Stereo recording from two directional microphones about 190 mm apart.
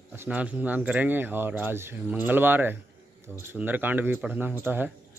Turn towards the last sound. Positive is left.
turn(degrees=-10)  # may be behind; listen again after turning